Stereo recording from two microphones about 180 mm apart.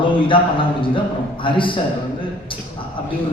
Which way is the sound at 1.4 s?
30° left (ahead or behind).